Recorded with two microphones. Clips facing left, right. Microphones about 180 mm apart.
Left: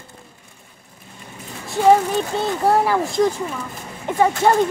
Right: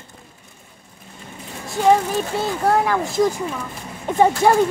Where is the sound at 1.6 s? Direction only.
Centre (ahead or behind).